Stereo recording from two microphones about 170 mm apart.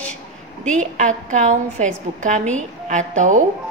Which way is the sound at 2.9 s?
45° right (ahead or behind).